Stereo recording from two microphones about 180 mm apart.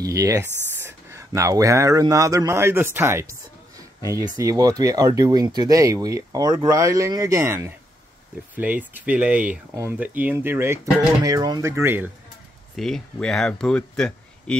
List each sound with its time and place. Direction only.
0.0 s speech: 20° right (ahead or behind)
12.7 s speech: centre (ahead or behind)